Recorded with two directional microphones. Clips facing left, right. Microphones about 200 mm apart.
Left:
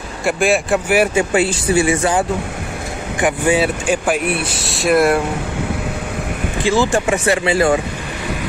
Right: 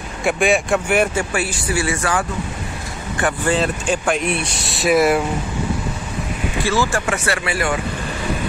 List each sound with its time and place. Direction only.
0.2 s speech: centre (ahead or behind)
1.1 s speech: 25° left (ahead or behind); by 5.2 s centre (ahead or behind)
6.6 s speech: 20° left (ahead or behind)